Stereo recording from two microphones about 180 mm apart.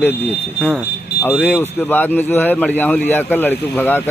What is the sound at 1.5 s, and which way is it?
Speech, 10° left (ahead or behind).